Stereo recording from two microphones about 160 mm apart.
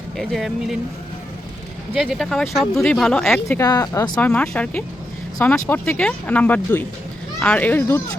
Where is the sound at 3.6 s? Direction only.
25° left (ahead or behind).